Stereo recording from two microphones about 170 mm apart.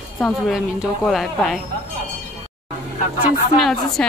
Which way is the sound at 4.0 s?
5° left (ahead or behind).